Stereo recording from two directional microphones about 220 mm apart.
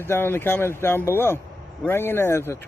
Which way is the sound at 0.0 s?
10° left (ahead or behind).